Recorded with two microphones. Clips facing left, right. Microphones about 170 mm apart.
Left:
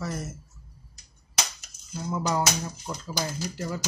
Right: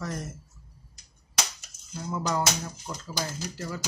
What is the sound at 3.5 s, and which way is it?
Speech, 15° left (ahead or behind).